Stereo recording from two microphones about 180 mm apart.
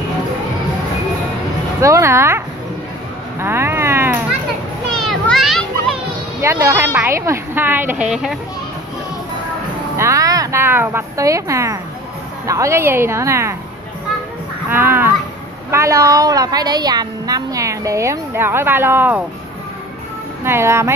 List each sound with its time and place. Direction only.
1.8 s a woman's voice: 15° right (ahead or behind)
3.3 s a sound: 15° right (ahead or behind)
5.0 s children playing: centre (ahead or behind)
6.4 s a woman's voice: 15° right (ahead or behind)
9.9 s a woman's voice: 15° right (ahead or behind)
14.7 s a woman's voice: 10° right (ahead or behind)
20.4 s a woman's voice: 15° right (ahead or behind)